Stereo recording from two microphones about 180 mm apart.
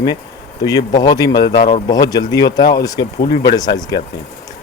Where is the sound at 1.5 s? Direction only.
60° left (ahead or behind).